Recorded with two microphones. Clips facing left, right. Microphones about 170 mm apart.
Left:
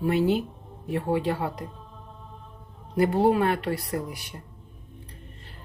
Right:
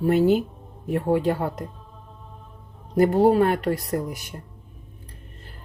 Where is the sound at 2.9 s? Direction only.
45° right (ahead or behind).